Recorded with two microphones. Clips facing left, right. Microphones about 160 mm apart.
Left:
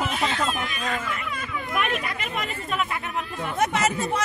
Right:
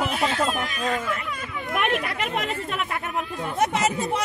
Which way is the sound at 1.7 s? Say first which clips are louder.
Right 3 dB; 60° right (ahead or behind).